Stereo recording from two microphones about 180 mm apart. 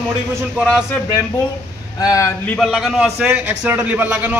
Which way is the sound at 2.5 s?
Centre (ahead or behind).